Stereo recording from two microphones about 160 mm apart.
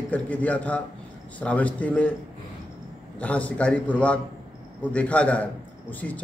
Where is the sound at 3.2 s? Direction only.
10° left (ahead or behind).